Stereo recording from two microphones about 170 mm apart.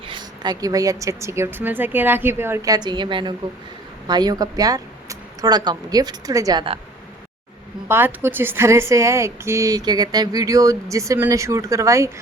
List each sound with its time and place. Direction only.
0.1 s speech: 25° right (ahead or behind)
7.9 s speech: 15° right (ahead or behind)